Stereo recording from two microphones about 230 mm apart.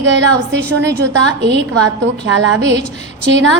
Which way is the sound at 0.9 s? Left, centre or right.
Right.